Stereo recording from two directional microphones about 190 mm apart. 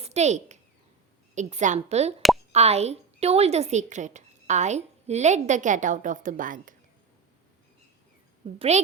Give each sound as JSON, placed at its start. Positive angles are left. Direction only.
{"t": 0.0, "sound": "a sound", "side_deg": -35}
{"t": 1.4, "sound": "speech", "side_deg": -35}
{"t": 8.5, "sound": "speech", "side_deg": -35}